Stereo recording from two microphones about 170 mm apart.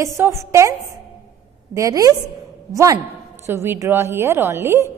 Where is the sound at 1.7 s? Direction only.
20° right (ahead or behind).